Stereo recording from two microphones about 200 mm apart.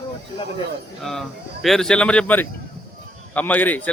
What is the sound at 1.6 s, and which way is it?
A man's voice, centre (ahead or behind).